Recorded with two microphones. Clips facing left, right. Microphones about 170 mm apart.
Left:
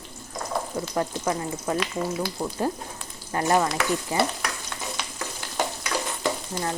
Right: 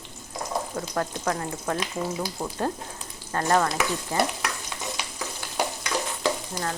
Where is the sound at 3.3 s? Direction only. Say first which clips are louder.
Left 1 dB; 10° left (ahead or behind).